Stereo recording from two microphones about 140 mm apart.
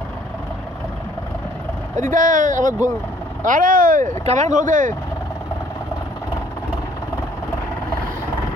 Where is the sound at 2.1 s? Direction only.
70° right (ahead or behind).